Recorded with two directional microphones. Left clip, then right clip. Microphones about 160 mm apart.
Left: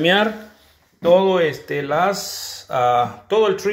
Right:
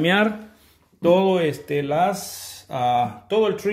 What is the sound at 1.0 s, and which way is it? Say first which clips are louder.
Speech: left 3 dB; 45° right (ahead or behind).